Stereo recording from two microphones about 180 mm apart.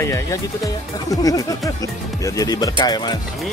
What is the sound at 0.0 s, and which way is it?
Speech, 15° left (ahead or behind).